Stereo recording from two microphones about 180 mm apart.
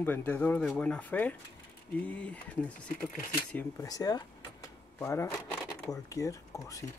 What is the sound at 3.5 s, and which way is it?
Speech, 20° left (ahead or behind).